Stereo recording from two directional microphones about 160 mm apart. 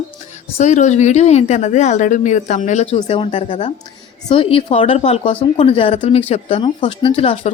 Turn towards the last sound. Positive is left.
turn(degrees=35)  # may be behind; listen again after turning